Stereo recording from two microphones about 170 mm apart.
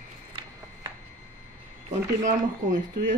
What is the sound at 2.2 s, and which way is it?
Speech, 45° right (ahead or behind).